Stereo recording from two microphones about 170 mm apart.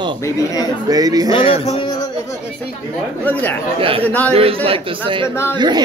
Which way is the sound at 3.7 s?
35° right (ahead or behind).